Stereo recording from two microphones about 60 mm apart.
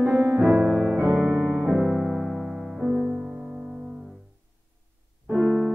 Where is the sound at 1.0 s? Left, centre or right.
Right.